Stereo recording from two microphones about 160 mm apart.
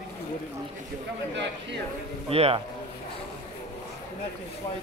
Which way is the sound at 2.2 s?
40° right (ahead or behind).